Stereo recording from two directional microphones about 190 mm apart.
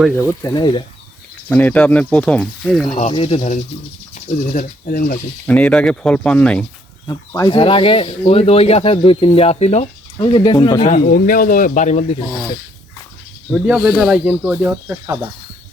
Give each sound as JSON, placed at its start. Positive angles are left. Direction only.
{"t": 0.4, "sound": "speech", "side_deg": 20}
{"t": 1.5, "sound": "speech", "side_deg": 5}
{"t": 2.8, "sound": "speech", "side_deg": 30}
{"t": 4.3, "sound": "speech", "side_deg": 45}
{"t": 5.5, "sound": "speech", "side_deg": 5}
{"t": 7.1, "sound": "speech", "side_deg": 20}
{"t": 10.2, "sound": "speech", "side_deg": 25}
{"t": 10.8, "sound": "speech", "side_deg": 45}
{"t": 13.5, "sound": "speech", "side_deg": -5}